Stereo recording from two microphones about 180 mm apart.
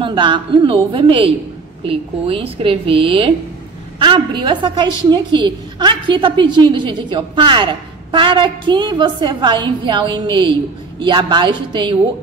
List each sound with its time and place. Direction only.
0.0 s a woman's voice: 25° right (ahead or behind)